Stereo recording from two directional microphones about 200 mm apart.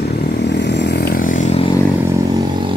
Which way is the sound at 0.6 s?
60° left (ahead or behind).